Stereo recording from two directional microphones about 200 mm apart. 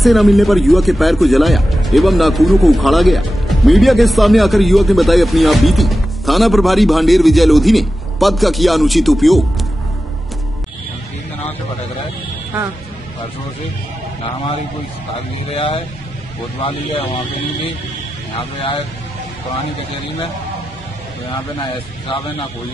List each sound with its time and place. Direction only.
0.0 s speech: centre (ahead or behind)
15.5 s speech: 25° left (ahead or behind)